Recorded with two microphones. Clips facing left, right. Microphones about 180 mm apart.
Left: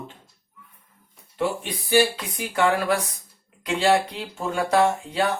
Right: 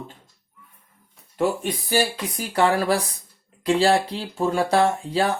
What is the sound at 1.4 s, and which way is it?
Speech, 45° right (ahead or behind).